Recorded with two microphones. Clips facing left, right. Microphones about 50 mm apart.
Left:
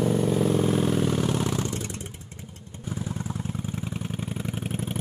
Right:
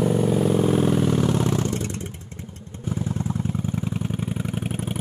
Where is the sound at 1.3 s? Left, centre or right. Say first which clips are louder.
Right 4 dB; right.